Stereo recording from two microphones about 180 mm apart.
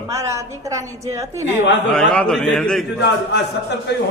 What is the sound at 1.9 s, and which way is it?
Speech, 5° left (ahead or behind).